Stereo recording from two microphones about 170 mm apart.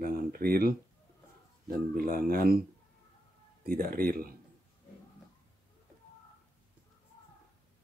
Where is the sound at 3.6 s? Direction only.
55° right (ahead or behind).